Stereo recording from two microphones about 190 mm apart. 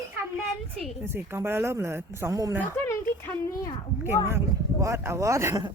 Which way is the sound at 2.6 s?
10° left (ahead or behind).